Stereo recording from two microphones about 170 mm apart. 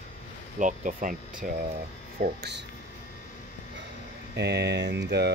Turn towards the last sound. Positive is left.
turn(degrees=-85)